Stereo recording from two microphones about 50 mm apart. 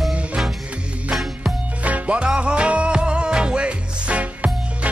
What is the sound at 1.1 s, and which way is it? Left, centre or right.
Music, centre.